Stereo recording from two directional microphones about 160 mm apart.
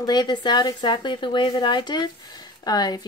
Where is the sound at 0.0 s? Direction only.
25° left (ahead or behind).